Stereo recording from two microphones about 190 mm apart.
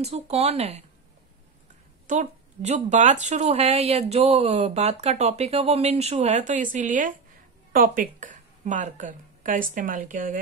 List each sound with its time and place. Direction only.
0.0 s speech: 35° right (ahead or behind)
2.0 s a woman's voice: 40° right (ahead or behind)